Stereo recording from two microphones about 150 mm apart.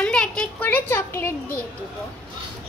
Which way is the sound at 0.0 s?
5° left (ahead or behind).